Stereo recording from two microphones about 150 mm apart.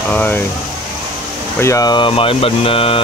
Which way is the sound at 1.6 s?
20° left (ahead or behind).